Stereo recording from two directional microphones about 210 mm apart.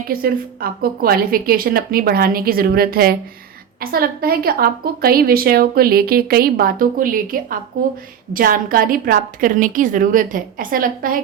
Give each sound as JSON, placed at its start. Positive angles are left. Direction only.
{"t": 0.1, "sound": "a woman's voice", "side_deg": -45}